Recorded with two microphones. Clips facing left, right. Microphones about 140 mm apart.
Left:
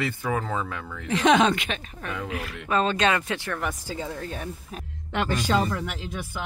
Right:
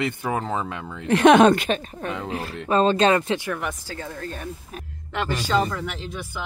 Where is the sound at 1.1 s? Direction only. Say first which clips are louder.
Right 6 dB; 60° right (ahead or behind); by 3.4 s 30° right (ahead or behind).